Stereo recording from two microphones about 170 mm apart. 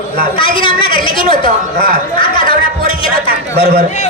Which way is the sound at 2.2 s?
30° left (ahead or behind).